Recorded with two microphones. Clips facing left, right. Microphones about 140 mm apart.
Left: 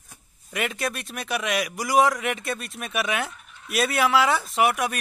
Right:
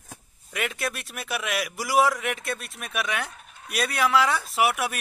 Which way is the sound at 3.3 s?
45° right (ahead or behind).